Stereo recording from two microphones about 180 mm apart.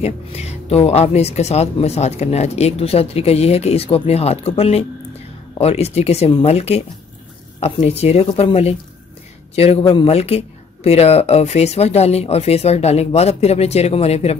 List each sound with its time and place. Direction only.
0.0 s speech: 35° left (ahead or behind)